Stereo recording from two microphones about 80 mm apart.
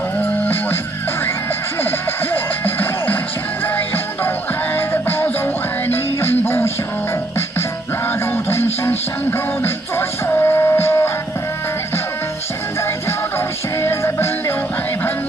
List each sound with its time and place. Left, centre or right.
0.2 s music: left
1.8 s music: left
8.5 s music: left
13.7 s music: left